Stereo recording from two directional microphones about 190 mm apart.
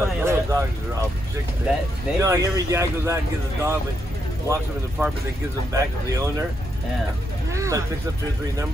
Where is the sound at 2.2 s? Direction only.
15° right (ahead or behind).